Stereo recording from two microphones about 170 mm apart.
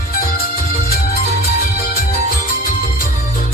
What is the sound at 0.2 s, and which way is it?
Music, 60° left (ahead or behind).